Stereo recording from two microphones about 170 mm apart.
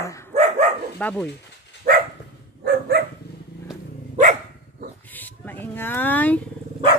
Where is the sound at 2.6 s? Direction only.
70° right (ahead or behind).